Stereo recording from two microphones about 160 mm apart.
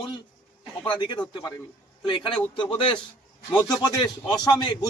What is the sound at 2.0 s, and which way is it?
A man's voice, 30° left (ahead or behind).